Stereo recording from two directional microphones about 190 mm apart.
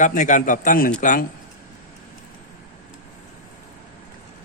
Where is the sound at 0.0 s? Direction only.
40° left (ahead or behind).